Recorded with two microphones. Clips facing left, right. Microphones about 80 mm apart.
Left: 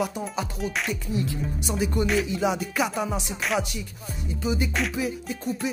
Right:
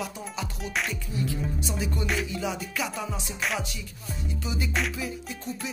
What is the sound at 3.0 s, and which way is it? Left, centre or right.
Music, centre.